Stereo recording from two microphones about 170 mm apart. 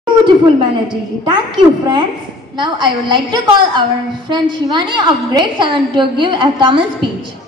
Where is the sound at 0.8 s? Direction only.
25° right (ahead or behind).